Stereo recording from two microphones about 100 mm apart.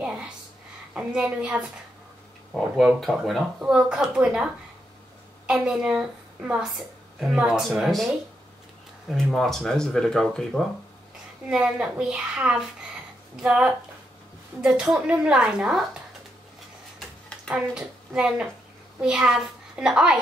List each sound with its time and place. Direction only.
0.9 s speech: 10° right (ahead or behind)
5.5 s a woman's voice: 5° right (ahead or behind)
11.4 s speech: 10° right (ahead or behind)
17.5 s a child's voice: 10° right (ahead or behind)